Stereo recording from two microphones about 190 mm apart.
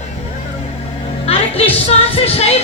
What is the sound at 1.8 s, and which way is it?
Speech, 30° left (ahead or behind).